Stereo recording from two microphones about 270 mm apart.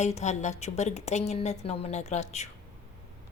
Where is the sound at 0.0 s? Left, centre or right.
Left.